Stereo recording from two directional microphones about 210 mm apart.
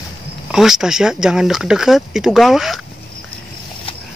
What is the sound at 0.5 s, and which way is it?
Speech, centre (ahead or behind).